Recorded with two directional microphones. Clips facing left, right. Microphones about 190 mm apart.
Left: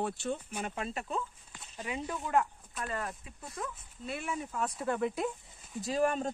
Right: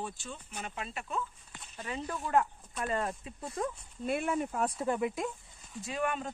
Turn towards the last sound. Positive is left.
turn(degrees=40)  # may be behind; listen again after turning